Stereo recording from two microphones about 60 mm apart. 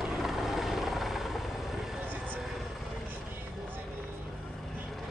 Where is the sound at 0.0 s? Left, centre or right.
Centre.